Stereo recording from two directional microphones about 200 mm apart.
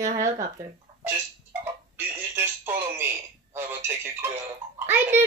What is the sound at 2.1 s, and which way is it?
A child's voice, 10° right (ahead or behind).